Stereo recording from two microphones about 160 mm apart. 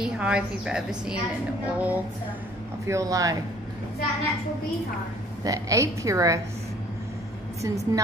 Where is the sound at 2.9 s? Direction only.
20° right (ahead or behind).